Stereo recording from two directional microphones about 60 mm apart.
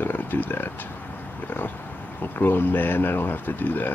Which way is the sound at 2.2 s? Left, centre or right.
Left.